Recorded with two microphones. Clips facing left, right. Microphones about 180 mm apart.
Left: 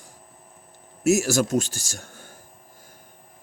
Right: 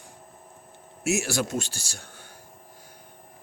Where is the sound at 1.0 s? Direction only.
40° left (ahead or behind).